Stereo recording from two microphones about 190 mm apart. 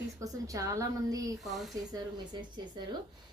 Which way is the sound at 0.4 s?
15° right (ahead or behind).